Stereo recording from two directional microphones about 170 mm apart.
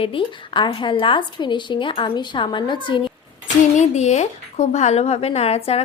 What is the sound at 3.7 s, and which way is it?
A woman's voice, 45° left (ahead or behind).